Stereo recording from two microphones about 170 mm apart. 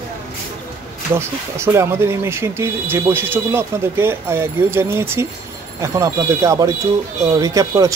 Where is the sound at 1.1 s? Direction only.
15° right (ahead or behind).